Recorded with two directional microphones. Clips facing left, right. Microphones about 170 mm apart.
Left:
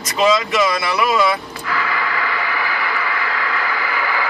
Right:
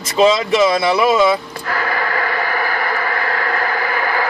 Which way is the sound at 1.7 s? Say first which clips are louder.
Right 2 dB; 45° right (ahead or behind).